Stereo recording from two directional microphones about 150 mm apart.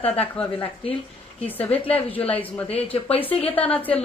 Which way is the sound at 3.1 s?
40° left (ahead or behind).